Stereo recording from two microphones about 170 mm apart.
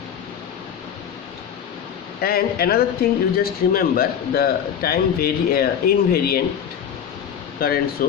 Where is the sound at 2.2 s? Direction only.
65° left (ahead or behind).